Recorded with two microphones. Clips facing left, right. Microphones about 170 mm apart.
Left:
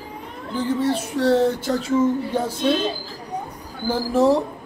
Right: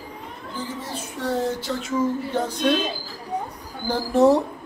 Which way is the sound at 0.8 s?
80° left.